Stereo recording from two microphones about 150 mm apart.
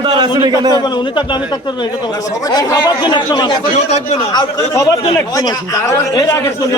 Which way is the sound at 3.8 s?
45° left (ahead or behind).